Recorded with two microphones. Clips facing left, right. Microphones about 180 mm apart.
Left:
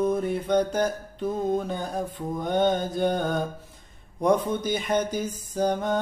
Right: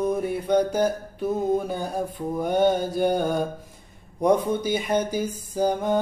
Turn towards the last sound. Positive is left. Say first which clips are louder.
# right 2 dB
turn(degrees=-10)  # may be behind; listen again after turning